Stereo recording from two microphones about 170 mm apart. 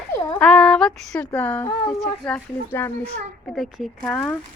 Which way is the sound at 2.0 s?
5° left (ahead or behind).